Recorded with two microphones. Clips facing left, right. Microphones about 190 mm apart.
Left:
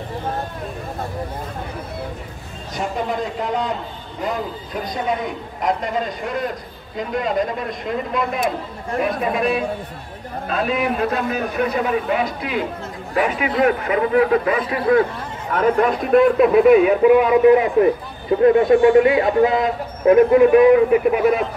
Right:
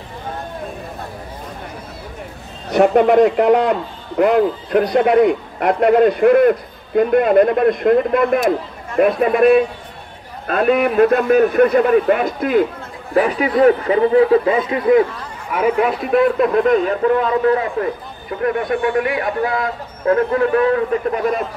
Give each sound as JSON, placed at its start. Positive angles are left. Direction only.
{"t": 2.7, "sound": "a man's voice", "side_deg": -65}
{"t": 13.1, "sound": "a man's voice", "side_deg": -35}
{"t": 15.5, "sound": "a man's voice", "side_deg": -5}